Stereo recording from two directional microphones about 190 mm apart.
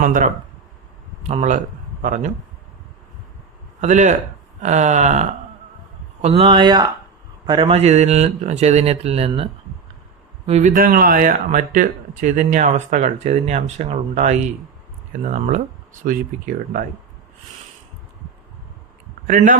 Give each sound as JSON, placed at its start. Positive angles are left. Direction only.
{"t": 0.0, "sound": "speech", "side_deg": -45}
{"t": 1.3, "sound": "a man's voice", "side_deg": -40}
{"t": 3.8, "sound": "speech", "side_deg": -35}
{"t": 19.3, "sound": "speech", "side_deg": -45}